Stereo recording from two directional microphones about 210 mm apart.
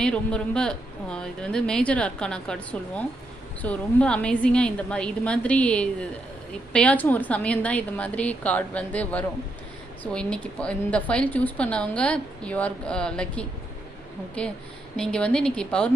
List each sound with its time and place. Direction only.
0.0 s a woman's voice: 5° left (ahead or behind)